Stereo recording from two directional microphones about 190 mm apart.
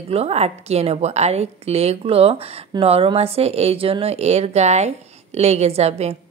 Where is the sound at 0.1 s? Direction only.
35° right (ahead or behind).